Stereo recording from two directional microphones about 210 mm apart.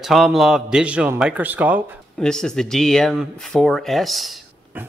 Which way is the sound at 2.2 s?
5° left (ahead or behind).